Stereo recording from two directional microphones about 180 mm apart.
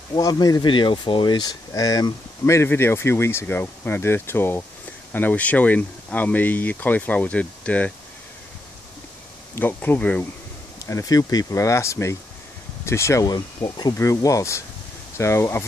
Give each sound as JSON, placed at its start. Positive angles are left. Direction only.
{"t": 0.1, "sound": "speech", "side_deg": 20}
{"t": 9.6, "sound": "speech", "side_deg": 10}
{"t": 10.9, "sound": "speech", "side_deg": 20}